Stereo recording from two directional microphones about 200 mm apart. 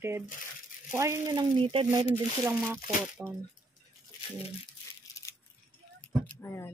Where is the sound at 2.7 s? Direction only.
5° right (ahead or behind).